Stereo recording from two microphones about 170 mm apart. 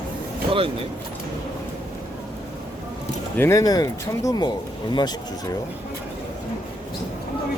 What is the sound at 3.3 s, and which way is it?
Speech, 15° left (ahead or behind).